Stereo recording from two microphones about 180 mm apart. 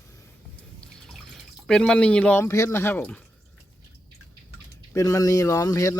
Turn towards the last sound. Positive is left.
turn(degrees=20)  # may be behind; listen again after turning